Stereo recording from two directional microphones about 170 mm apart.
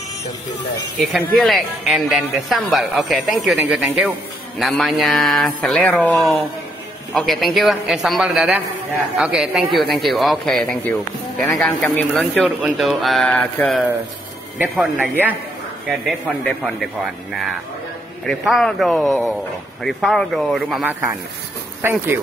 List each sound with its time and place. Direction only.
0.9 s speech: centre (ahead or behind)
12.4 s speech: 5° right (ahead or behind)
14.6 s speech: 10° right (ahead or behind)
18.2 s speech: centre (ahead or behind)
21.8 s speech: 15° right (ahead or behind)